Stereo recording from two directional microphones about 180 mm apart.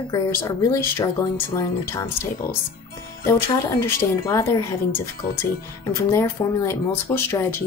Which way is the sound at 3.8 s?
15° left (ahead or behind).